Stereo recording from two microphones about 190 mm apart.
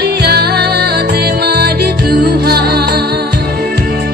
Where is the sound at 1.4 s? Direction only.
55° right (ahead or behind).